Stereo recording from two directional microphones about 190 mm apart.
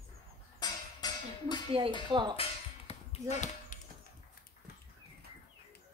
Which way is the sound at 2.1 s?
25° right (ahead or behind).